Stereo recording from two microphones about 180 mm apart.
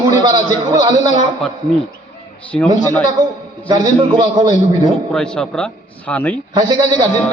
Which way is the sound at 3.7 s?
30° right (ahead or behind).